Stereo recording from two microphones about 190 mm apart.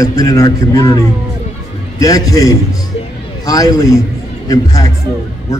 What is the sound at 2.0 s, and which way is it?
A man's voice, 20° left (ahead or behind).